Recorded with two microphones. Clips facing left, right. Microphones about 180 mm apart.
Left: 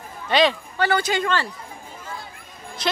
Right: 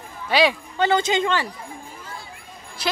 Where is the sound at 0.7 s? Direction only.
20° right (ahead or behind).